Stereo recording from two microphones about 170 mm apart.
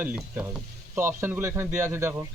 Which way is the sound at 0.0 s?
5° right (ahead or behind).